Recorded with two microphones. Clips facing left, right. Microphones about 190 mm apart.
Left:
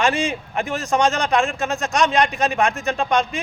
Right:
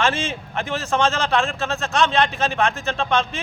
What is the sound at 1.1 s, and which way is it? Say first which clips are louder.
Speech: left 2 dB; centre (ahead or behind).